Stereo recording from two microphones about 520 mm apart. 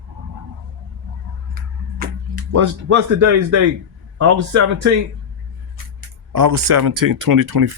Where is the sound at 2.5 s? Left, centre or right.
Right.